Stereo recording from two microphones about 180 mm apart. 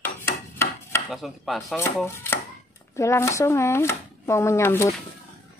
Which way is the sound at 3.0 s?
15° left (ahead or behind).